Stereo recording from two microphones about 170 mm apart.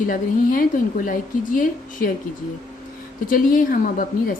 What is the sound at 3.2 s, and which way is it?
A woman's voice, 55° left (ahead or behind).